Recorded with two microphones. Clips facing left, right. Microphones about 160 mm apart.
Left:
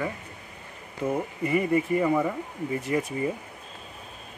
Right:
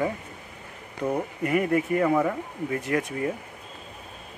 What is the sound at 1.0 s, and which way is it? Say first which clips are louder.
Speech: right 1 dB; centre (ahead or behind).